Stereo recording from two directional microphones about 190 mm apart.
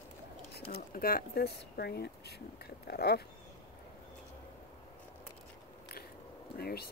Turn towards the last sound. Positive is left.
turn(degrees=55)  # may be behind; listen again after turning